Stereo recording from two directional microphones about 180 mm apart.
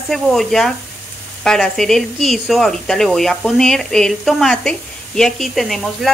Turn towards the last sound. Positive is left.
turn(degrees=0)  # may be behind; listen again after turning